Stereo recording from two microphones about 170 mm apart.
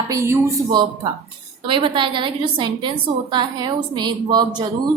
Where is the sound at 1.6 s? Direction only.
30° right (ahead or behind).